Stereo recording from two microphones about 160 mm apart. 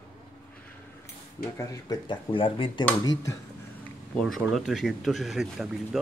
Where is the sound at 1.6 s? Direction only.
25° left (ahead or behind).